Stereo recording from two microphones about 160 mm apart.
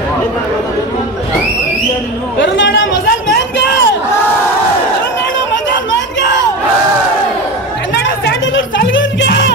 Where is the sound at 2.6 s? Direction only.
90° left.